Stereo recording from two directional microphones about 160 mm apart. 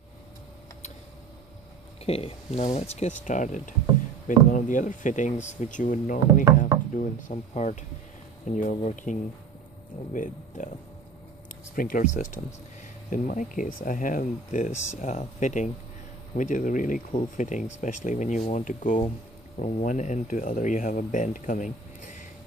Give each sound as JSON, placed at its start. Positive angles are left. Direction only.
{"t": 2.0, "sound": "speech", "side_deg": 40}
{"t": 11.7, "sound": "speech", "side_deg": 60}
{"t": 13.1, "sound": "speech", "side_deg": 55}